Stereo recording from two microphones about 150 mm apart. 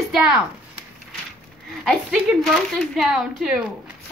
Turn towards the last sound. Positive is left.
turn(degrees=-5)  # may be behind; listen again after turning